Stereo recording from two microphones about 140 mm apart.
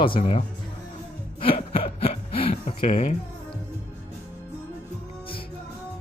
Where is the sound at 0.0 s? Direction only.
40° left (ahead or behind).